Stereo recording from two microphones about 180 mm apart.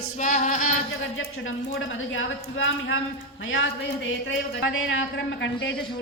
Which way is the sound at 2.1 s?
90° left.